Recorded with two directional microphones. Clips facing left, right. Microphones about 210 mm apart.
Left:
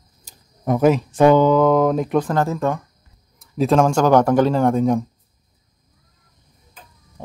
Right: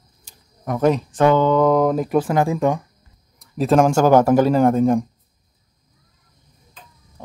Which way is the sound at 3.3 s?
Centre (ahead or behind).